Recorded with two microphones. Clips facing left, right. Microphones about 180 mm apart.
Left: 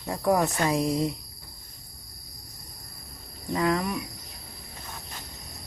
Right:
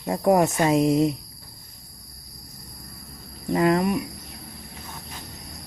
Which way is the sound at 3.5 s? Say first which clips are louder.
Right 6 dB; 25° right (ahead or behind).